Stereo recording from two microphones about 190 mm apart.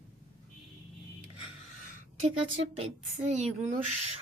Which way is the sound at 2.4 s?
30° right (ahead or behind).